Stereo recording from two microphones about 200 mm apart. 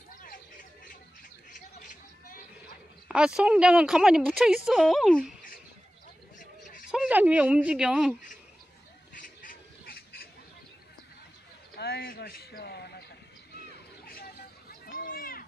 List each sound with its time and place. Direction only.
1.8 s a sound: 40° left (ahead or behind)
3.1 s speech: 5° right (ahead or behind)
6.9 s speech: 5° right (ahead or behind)
9.1 s duck: 45° left (ahead or behind)
11.7 s a man's voice: 50° left (ahead or behind)
14.0 s a sound: 45° left (ahead or behind)